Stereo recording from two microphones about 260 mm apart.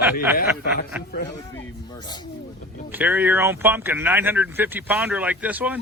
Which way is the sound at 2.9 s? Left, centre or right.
Centre.